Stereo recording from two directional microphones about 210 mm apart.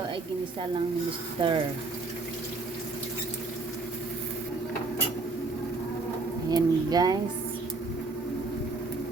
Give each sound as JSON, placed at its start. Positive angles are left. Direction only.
{"t": 1.4, "sound": "speech", "side_deg": -25}
{"t": 6.5, "sound": "speech", "side_deg": -20}